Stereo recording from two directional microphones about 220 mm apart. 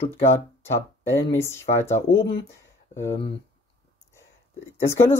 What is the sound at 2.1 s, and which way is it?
Speech, 65° left (ahead or behind).